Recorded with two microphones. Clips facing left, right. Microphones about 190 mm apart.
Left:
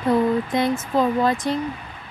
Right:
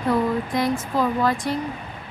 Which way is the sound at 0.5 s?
25° left (ahead or behind).